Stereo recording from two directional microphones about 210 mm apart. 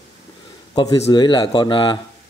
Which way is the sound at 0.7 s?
20° left (ahead or behind).